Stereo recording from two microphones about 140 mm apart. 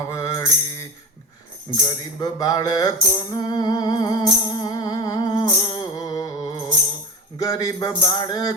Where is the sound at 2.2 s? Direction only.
25° left (ahead or behind).